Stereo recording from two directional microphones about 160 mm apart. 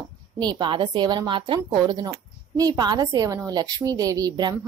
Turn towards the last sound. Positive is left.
turn(degrees=-25)  # may be behind; listen again after turning